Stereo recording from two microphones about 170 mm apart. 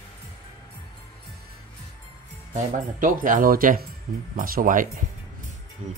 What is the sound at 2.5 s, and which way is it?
Speech, 50° right (ahead or behind).